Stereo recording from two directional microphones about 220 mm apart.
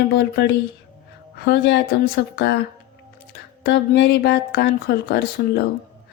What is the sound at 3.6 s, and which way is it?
Speech, 50° left (ahead or behind).